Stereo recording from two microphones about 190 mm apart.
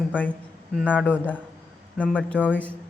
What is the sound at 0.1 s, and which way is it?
A man's voice, 5° left (ahead or behind).